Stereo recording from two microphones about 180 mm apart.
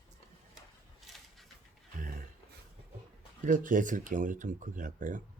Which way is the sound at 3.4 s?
45° right (ahead or behind).